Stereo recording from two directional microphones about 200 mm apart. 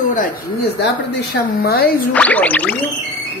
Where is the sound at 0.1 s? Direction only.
45° left (ahead or behind).